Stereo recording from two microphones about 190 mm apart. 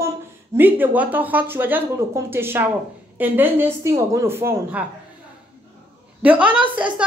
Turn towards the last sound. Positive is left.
turn(degrees=-25)  # may be behind; listen again after turning